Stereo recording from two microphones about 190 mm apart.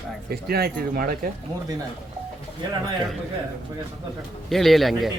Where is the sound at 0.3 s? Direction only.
55° right (ahead or behind).